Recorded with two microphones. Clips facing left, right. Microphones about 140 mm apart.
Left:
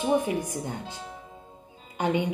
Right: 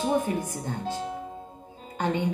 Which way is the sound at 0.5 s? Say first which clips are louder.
Right 2 dB; 15° left (ahead or behind).